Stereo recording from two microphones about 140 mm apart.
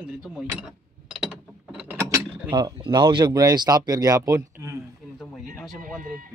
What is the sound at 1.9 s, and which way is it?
Mechanisms, 20° right (ahead or behind).